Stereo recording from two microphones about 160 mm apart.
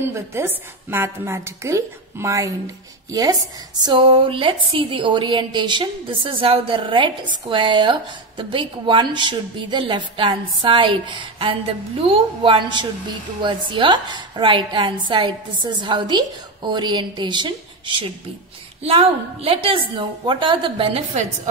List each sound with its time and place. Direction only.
0.0 s a woman's voice: 15° right (ahead or behind); by 21.3 s 40° right (ahead or behind)